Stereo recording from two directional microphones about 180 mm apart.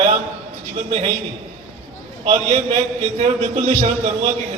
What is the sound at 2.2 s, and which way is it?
A man's voice, 40° right (ahead or behind).